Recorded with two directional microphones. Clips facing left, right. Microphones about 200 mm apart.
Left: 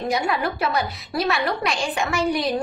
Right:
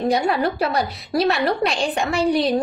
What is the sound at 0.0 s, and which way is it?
A woman's voice, 35° right (ahead or behind).